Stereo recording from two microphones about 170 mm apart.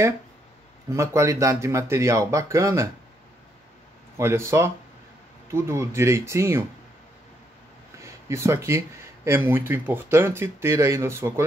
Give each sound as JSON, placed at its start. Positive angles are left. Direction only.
{"t": 0.9, "sound": "speech", "side_deg": -15}
{"t": 4.2, "sound": "speech", "side_deg": -15}
{"t": 8.0, "sound": "speech", "side_deg": -15}